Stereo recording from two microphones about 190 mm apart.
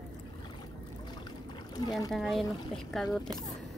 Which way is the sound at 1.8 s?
20° left (ahead or behind).